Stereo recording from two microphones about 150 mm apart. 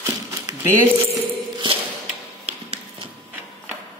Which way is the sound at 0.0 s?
20° right (ahead or behind).